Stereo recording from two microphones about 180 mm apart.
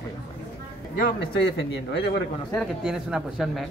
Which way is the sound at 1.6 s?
75° left (ahead or behind).